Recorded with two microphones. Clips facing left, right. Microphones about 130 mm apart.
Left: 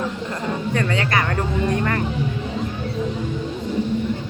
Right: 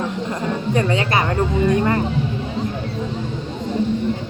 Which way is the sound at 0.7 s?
20° right (ahead or behind).